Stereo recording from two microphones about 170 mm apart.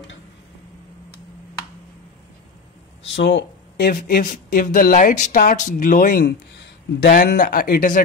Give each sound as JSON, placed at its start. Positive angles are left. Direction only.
{"t": 3.2, "sound": "speech", "side_deg": 85}